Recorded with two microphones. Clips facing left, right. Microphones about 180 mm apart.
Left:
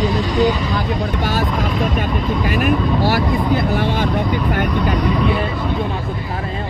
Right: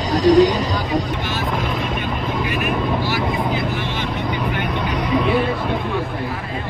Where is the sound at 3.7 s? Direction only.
50° left (ahead or behind).